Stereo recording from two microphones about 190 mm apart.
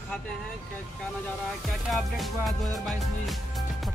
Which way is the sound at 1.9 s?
Centre (ahead or behind).